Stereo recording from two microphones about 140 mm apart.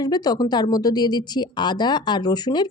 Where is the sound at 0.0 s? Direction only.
30° left (ahead or behind).